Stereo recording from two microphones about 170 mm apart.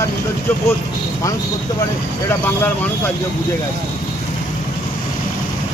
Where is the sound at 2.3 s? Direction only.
10° left (ahead or behind).